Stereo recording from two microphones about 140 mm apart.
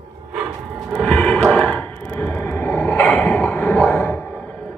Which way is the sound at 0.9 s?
5° left (ahead or behind).